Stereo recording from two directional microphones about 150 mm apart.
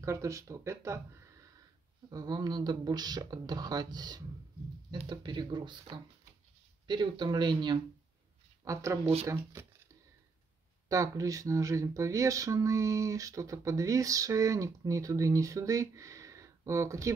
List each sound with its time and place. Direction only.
0.0 s speech: 20° right (ahead or behind)
8.6 s speech: 20° right (ahead or behind)
10.9 s speech: 25° right (ahead or behind)